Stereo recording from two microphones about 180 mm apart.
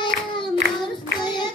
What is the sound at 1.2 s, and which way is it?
Child singing, 25° left (ahead or behind).